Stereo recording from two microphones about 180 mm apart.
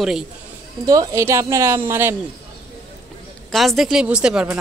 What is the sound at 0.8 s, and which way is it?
Speech, 20° right (ahead or behind).